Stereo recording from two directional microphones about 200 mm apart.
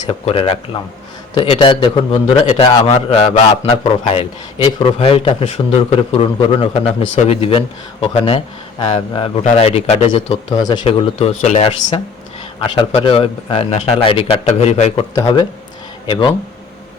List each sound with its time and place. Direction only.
0.0 s a man's voice: 25° left (ahead or behind)
10.5 s a man's voice: 20° left (ahead or behind)
15.1 s a man's voice: 20° left (ahead or behind)